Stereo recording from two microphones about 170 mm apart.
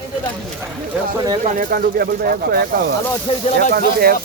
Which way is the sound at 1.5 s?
60° right (ahead or behind).